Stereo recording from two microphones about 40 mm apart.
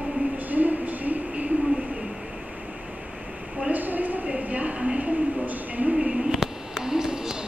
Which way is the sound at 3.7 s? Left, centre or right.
Right.